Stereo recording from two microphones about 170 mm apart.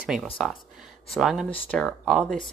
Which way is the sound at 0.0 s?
Centre (ahead or behind).